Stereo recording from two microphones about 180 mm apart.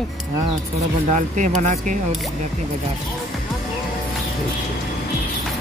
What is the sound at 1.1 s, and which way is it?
Speech, 45° right (ahead or behind).